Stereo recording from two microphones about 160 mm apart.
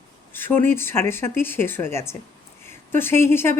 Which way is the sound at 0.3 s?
15° left (ahead or behind).